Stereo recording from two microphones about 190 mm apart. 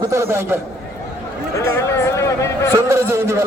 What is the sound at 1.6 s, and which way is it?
Speech, 15° left (ahead or behind).